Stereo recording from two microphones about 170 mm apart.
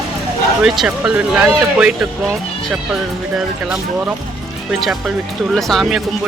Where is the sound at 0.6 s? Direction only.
5° right (ahead or behind).